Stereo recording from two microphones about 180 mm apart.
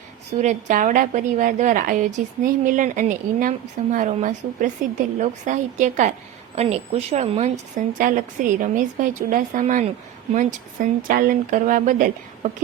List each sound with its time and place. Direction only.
0.3 s a woman's voice: 45° right (ahead or behind)